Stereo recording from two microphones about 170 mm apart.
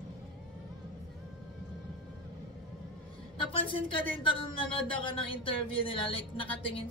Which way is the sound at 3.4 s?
30° left (ahead or behind).